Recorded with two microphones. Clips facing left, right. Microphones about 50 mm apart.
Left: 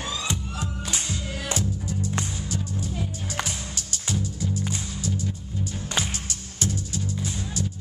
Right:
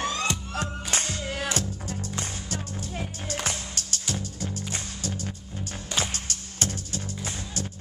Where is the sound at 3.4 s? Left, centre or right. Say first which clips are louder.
Right 2 dB; right.